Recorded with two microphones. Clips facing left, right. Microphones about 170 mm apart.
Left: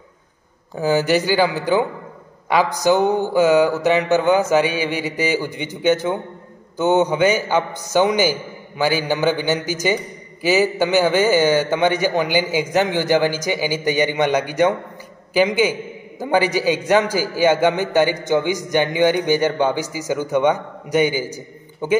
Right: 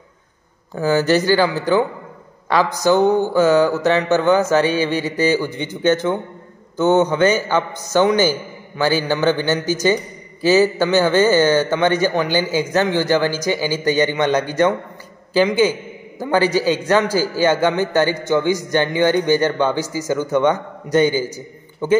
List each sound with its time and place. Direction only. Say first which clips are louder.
0.7 s a man's voice: right 1 dB; 15° left (ahead or behind)